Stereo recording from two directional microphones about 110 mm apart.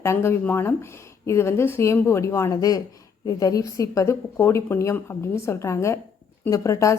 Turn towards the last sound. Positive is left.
turn(degrees=30)  # may be behind; listen again after turning